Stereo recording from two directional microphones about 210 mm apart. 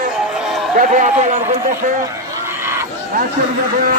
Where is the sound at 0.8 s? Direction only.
40° right (ahead or behind).